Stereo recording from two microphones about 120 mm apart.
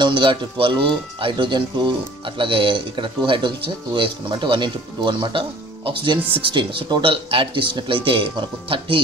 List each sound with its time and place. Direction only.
0.0 s speech: 45° right (ahead or behind)